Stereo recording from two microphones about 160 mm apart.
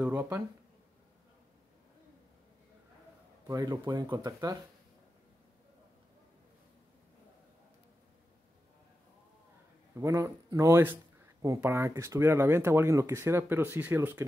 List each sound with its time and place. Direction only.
0.0 s a sound: 5° right (ahead or behind)
3.4 s speech: 20° right (ahead or behind)
9.9 s speech: 20° right (ahead or behind)